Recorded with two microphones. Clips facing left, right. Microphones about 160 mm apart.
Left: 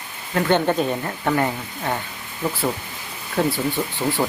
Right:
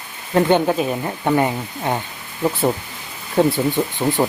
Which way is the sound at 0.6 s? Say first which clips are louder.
Right 1 dB; 5° right (ahead or behind).